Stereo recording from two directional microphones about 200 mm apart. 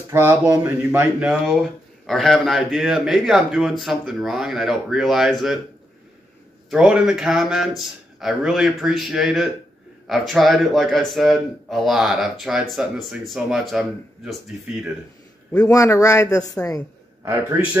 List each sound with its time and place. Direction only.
0.1 s speech: 10° right (ahead or behind)
6.7 s speech: 5° right (ahead or behind)
15.6 s speech: 15° left (ahead or behind)
17.2 s a man's voice: 15° right (ahead or behind)